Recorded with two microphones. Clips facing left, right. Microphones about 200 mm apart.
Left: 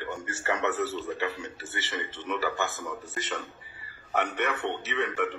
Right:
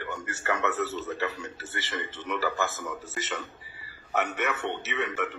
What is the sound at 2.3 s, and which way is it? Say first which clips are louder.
A man's voice: right 1 dB; centre (ahead or behind).